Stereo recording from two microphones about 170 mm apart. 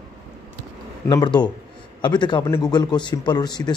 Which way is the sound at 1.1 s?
25° left (ahead or behind).